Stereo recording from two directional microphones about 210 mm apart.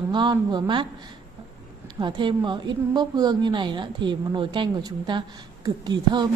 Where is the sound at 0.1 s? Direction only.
20° right (ahead or behind).